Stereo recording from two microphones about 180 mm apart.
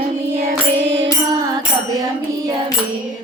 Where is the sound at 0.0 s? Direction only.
55° right (ahead or behind).